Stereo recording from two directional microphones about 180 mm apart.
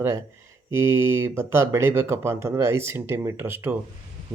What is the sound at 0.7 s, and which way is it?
Speech, 15° right (ahead or behind).